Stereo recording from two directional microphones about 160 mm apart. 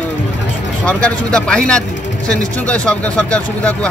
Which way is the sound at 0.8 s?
5° left (ahead or behind).